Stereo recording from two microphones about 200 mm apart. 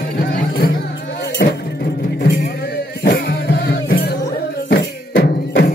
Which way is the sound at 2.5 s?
50° left (ahead or behind).